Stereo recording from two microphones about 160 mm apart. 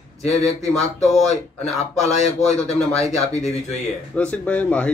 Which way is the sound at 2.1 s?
45° left (ahead or behind).